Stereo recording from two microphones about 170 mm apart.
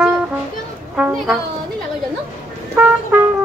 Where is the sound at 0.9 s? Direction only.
5° right (ahead or behind).